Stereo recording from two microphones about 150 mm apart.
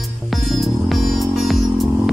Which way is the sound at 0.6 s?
Centre (ahead or behind).